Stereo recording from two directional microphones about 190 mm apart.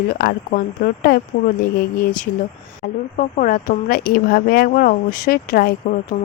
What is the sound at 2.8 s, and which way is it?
Speech, 55° left (ahead or behind).